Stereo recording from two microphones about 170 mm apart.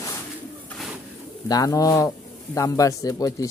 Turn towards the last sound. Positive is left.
turn(degrees=20)  # may be behind; listen again after turning